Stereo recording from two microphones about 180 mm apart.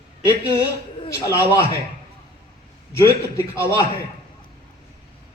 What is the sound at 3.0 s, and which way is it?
Speech, 15° left (ahead or behind).